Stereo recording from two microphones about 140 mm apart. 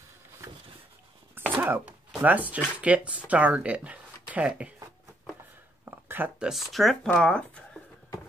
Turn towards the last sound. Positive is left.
turn(degrees=10)  # may be behind; listen again after turning